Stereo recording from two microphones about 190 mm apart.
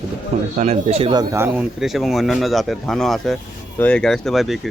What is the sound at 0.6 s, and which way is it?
Speech, 35° right (ahead or behind).